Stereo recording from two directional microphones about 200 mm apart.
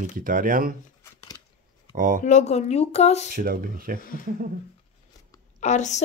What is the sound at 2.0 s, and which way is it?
Speech, 40° right (ahead or behind).